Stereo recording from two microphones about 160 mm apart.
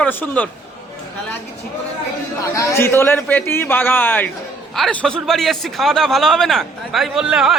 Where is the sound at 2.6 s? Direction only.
20° left (ahead or behind).